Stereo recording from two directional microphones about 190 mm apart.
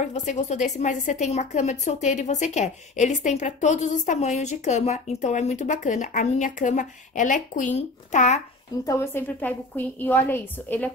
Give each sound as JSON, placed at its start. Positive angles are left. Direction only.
{"t": 0.0, "sound": "a woman's voice", "side_deg": 40}
{"t": 8.8, "sound": "a woman's voice", "side_deg": 15}